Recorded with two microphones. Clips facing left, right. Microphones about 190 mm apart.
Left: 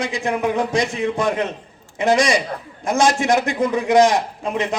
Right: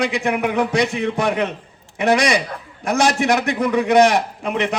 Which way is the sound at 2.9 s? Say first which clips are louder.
Even; 65° right (ahead or behind).